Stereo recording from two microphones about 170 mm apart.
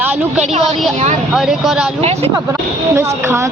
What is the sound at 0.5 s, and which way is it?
Speech, 40° right (ahead or behind).